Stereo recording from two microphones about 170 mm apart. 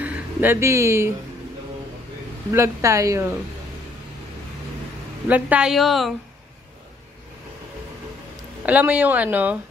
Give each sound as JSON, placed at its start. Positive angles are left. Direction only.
{"t": 0.0, "sound": "speech", "side_deg": -10}
{"t": 2.5, "sound": "speech", "side_deg": -15}
{"t": 5.3, "sound": "a woman's voice", "side_deg": -5}
{"t": 8.6, "sound": "speech", "side_deg": -10}